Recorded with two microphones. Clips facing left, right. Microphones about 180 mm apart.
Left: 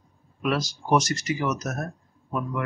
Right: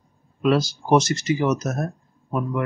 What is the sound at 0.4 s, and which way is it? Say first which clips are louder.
Speech: right 7 dB; 30° right (ahead or behind).